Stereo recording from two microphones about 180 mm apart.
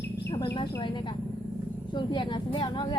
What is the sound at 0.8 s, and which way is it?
Speech, 25° left (ahead or behind).